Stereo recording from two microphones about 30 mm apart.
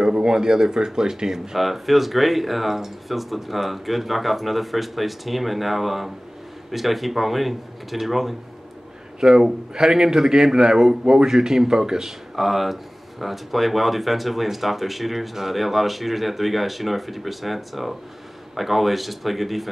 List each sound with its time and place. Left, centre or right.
0.0 s a man's voice: right
1.6 s speech: centre
9.2 s a man's voice: centre
12.4 s speech: centre